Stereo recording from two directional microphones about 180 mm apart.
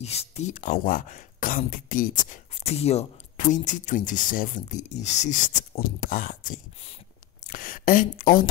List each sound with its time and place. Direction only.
0.0 s speech: 35° left (ahead or behind)